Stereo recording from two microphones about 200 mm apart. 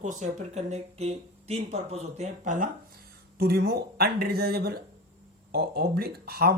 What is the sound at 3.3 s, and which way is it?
Speech, 50° right (ahead or behind).